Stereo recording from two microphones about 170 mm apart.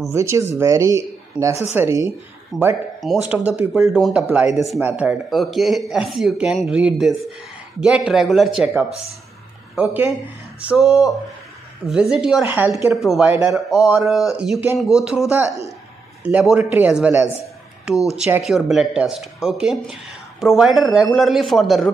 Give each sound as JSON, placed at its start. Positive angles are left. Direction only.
{"t": 0.1, "sound": "speech", "side_deg": -15}
{"t": 2.5, "sound": "speech", "side_deg": 0}